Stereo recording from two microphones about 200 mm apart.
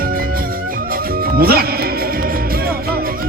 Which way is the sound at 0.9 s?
50° right (ahead or behind).